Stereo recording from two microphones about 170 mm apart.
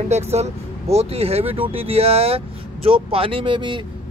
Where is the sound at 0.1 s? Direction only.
40° right (ahead or behind).